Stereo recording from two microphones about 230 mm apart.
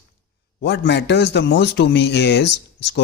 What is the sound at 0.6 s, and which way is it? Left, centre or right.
Speech, left.